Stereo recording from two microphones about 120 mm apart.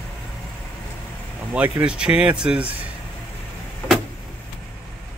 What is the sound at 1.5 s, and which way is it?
Speech, 10° right (ahead or behind).